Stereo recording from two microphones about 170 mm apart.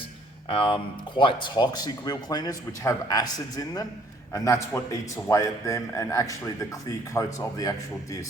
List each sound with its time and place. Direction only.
0.4 s speech: 30° left (ahead or behind)